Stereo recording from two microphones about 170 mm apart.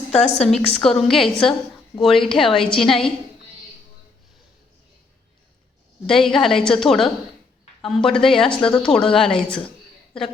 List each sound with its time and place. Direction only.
0.1 s a woman's voice: 40° left (ahead or behind)
0.3 s speech: 5° left (ahead or behind)
6.1 s speech: centre (ahead or behind)